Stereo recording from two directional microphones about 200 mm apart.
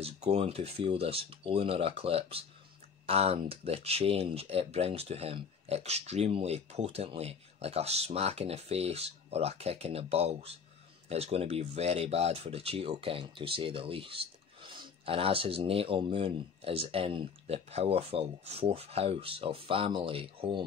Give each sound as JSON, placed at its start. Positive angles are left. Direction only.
{"t": 0.0, "sound": "speech", "side_deg": -30}